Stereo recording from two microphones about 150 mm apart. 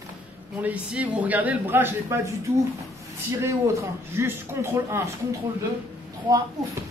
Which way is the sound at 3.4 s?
20° right (ahead or behind).